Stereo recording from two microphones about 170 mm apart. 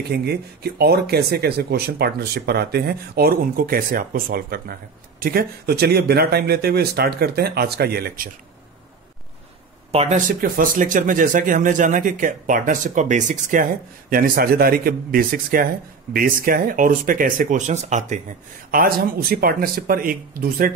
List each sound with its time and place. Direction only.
0.1 s speech: 70° right (ahead or behind)
9.9 s speech: 45° right (ahead or behind)
14.1 s speech: 60° right (ahead or behind); by 18.2 s 45° right (ahead or behind)
18.7 s speech: 60° right (ahead or behind)